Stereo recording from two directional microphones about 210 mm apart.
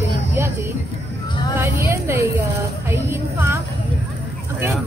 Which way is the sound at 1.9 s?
10° right (ahead or behind).